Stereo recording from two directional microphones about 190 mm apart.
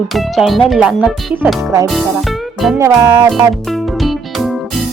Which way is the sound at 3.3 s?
Centre (ahead or behind).